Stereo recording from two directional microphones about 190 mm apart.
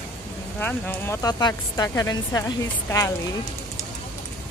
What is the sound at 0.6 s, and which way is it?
Speech, 10° left (ahead or behind).